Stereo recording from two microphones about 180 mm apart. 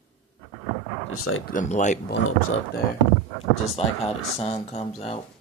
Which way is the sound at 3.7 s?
35° left (ahead or behind).